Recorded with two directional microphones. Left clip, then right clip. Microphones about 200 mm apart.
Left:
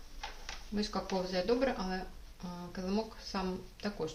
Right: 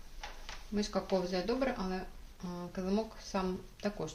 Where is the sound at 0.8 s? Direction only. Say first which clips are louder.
Right 2 dB; 35° right (ahead or behind).